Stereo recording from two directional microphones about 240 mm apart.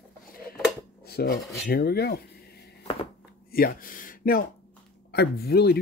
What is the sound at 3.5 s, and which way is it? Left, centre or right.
Speech, left.